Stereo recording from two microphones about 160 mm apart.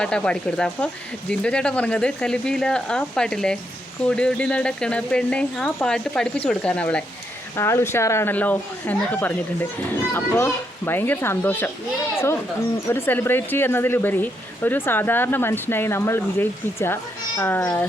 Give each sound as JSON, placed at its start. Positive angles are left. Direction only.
{"t": 0.0, "sound": "speech", "side_deg": 5}